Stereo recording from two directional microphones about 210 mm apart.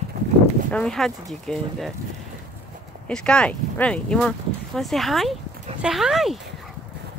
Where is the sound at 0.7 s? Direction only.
5° left (ahead or behind).